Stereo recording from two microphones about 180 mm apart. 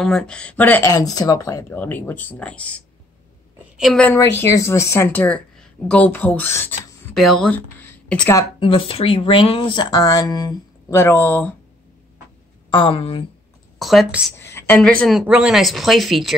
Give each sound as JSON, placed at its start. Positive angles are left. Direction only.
{"t": 0.0, "sound": "a woman's voice", "side_deg": 5}
{"t": 4.1, "sound": "speech", "side_deg": 15}
{"t": 7.2, "sound": "speech", "side_deg": 0}
{"t": 8.5, "sound": "speech", "side_deg": 30}
{"t": 12.7, "sound": "speech", "side_deg": 30}
{"t": 13.7, "sound": "speech", "side_deg": 0}
{"t": 14.4, "sound": "a woman's voice", "side_deg": 15}